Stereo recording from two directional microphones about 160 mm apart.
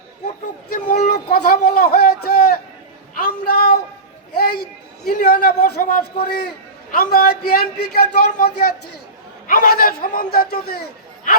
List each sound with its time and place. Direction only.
0.9 s a sound: 70° left (ahead or behind)
7.1 s speech: 70° left (ahead or behind)
9.5 s a man's voice: 65° left (ahead or behind)